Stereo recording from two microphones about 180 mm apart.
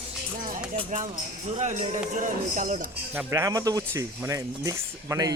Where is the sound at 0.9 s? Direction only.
45° right (ahead or behind).